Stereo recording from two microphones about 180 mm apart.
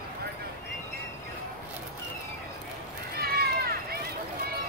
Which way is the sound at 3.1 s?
60° right (ahead or behind).